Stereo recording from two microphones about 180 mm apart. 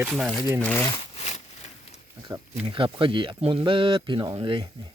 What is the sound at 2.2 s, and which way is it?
Speech, 25° right (ahead or behind).